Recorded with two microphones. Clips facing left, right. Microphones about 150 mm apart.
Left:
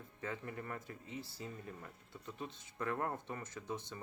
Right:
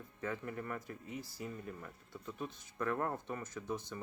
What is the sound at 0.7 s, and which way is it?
Speech, 25° left (ahead or behind).